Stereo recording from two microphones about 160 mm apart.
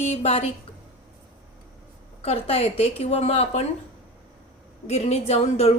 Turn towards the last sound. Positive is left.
turn(degrees=40)  # may be behind; listen again after turning